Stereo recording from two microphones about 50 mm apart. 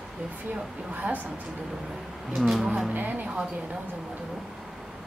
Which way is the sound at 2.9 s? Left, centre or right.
Right.